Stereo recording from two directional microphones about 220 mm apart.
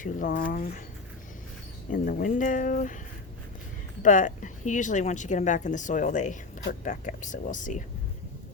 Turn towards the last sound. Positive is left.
turn(degrees=35)  # may be behind; listen again after turning